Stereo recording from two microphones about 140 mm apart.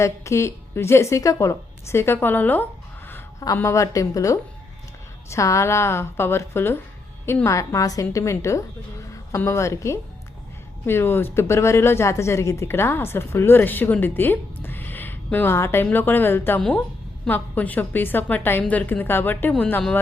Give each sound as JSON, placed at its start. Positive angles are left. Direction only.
{"t": 0.0, "sound": "a woman's voice", "side_deg": 20}